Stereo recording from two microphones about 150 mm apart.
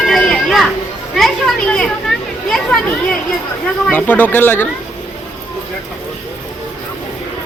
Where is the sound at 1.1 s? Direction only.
5° left (ahead or behind).